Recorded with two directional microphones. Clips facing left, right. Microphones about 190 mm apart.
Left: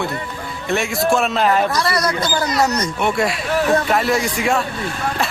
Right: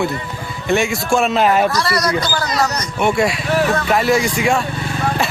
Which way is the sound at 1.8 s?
20° left (ahead or behind).